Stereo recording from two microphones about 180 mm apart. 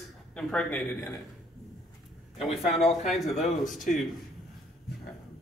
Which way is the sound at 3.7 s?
Centre (ahead or behind).